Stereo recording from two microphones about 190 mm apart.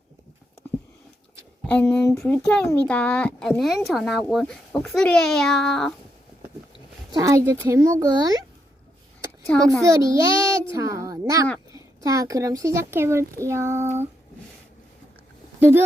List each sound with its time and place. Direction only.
1.6 s speech: 10° left (ahead or behind)
7.1 s speech: 15° right (ahead or behind)
9.5 s speech: 5° left (ahead or behind)
9.8 s speech: 15° right (ahead or behind)